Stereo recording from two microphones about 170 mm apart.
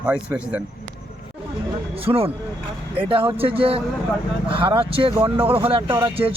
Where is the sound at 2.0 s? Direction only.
35° right (ahead or behind).